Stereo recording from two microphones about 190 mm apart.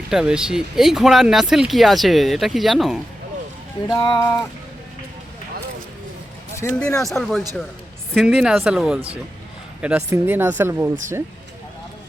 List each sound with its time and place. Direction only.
0.1 s speech: 5° right (ahead or behind)
3.8 s speech: 20° left (ahead or behind)
6.6 s speech: 10° left (ahead or behind); by 10.9 s 10° right (ahead or behind)